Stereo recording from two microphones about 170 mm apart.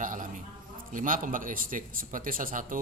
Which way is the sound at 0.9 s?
50° right (ahead or behind).